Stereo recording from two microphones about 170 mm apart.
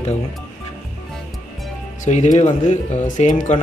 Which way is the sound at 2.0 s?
45° left (ahead or behind).